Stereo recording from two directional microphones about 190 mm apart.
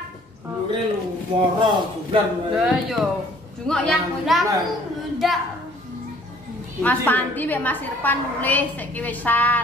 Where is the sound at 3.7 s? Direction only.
Centre (ahead or behind).